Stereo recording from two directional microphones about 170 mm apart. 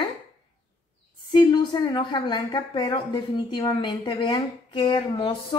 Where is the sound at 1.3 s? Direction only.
25° left (ahead or behind).